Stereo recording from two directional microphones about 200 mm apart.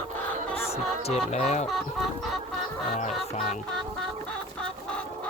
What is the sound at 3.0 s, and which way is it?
Music, 35° left (ahead or behind).